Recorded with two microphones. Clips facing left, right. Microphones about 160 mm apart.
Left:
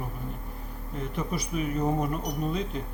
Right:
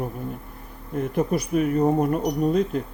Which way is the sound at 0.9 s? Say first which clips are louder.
Right 9 dB; 50° right (ahead or behind).